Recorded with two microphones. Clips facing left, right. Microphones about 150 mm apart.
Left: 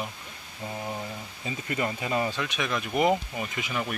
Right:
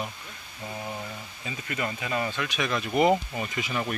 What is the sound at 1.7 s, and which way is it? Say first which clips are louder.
Speech: left 2 dB; 30° left (ahead or behind).